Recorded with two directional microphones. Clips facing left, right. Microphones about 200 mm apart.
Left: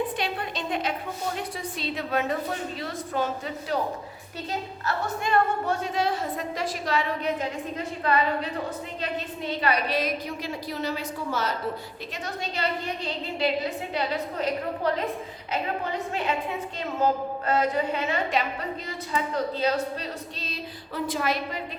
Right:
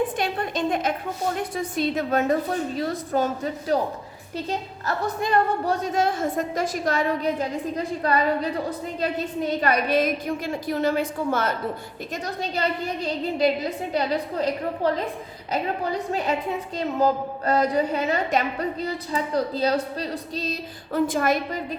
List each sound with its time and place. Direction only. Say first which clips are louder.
0.2 s a woman's voice: right 5 dB; 45° right (ahead or behind)
4.9 s a woman's voice: right 3 dB; 40° right (ahead or behind); by 11.5 s 55° right (ahead or behind)
12.1 s a woman's voice: right 5 dB; 40° right (ahead or behind)
15.8 s a woman's voice: right 4 dB; 40° right (ahead or behind)